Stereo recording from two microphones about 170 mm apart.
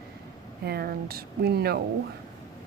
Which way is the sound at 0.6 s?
65° right (ahead or behind).